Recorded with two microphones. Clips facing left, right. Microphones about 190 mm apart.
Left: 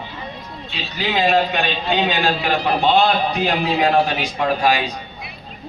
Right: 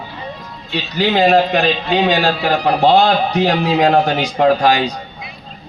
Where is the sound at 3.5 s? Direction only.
40° right (ahead or behind).